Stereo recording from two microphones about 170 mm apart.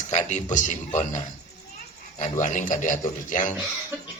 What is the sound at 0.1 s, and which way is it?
Speech, 45° left (ahead or behind).